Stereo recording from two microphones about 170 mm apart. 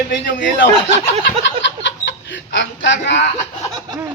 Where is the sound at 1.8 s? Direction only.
90° left.